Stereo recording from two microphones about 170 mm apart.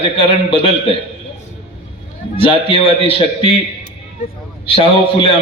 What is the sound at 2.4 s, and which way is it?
A man's voice, 30° left (ahead or behind).